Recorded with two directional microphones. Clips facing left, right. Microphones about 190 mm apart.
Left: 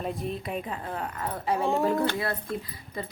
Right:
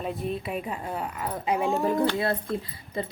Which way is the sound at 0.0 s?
Centre (ahead or behind).